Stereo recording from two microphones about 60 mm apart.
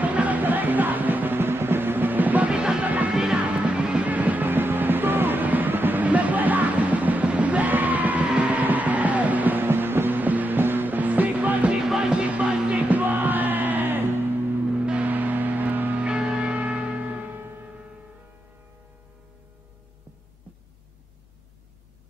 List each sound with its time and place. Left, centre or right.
0.0 s music: right